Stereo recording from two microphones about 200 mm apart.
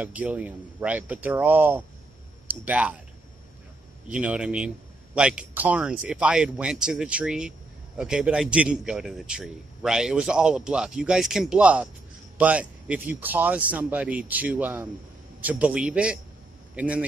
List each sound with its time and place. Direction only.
0.0 s a man's voice: 5° right (ahead or behind)
4.1 s a man's voice: 5° right (ahead or behind)